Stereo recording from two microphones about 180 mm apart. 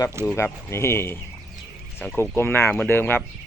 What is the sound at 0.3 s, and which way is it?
Speech, 15° left (ahead or behind).